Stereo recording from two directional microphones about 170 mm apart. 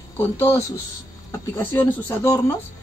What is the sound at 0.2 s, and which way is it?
Speech, 15° left (ahead or behind).